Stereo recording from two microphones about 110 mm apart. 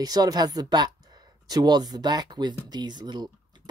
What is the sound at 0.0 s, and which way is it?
Speech, 35° right (ahead or behind).